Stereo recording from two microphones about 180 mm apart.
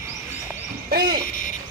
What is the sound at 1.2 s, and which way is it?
Owl, 45° left (ahead or behind).